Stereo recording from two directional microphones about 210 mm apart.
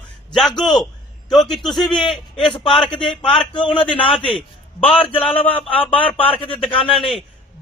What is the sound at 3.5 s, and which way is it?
A man's voice, 25° left (ahead or behind).